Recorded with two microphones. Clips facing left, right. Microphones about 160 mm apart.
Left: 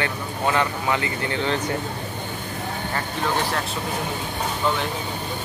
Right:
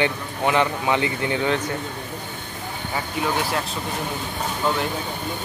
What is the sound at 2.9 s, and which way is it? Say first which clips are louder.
Speech: right 1 dB; 5° right (ahead or behind).